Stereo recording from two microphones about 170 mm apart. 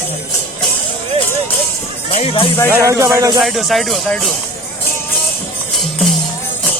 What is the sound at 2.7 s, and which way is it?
Speech, 15° right (ahead or behind).